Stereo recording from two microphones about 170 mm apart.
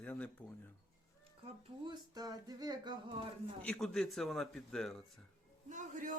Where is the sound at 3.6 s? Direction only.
5° left (ahead or behind).